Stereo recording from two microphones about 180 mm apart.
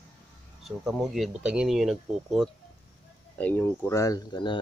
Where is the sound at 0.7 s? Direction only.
Centre (ahead or behind).